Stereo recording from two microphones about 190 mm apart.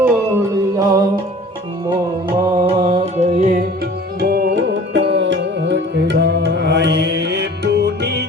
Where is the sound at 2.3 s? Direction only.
30° right (ahead or behind).